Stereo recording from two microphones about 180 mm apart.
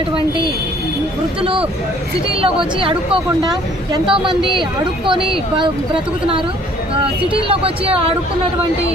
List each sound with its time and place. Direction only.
1.4 s speech: 30° right (ahead or behind)
2.8 s speech: 30° right (ahead or behind)
4.1 s a woman's voice: 5° right (ahead or behind)
5.0 s speech: 30° right (ahead or behind)